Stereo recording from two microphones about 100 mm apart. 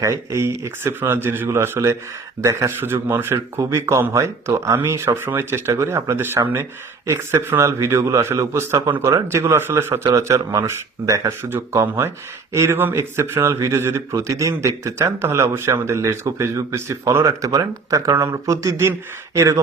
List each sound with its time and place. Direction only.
0.0 s a man's voice: 30° right (ahead or behind)